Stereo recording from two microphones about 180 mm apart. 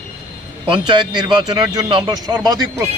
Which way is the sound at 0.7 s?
25° right (ahead or behind).